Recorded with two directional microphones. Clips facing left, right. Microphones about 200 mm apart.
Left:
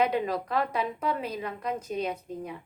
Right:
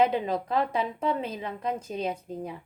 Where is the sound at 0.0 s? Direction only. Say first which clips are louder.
Right 2 dB; 25° right (ahead or behind).